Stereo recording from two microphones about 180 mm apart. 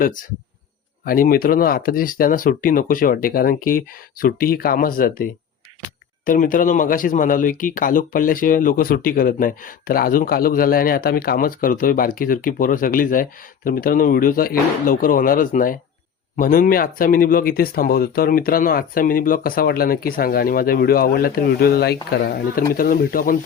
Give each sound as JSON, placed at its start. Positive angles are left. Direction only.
{"t": 0.0, "sound": "a man's voice", "side_deg": 50}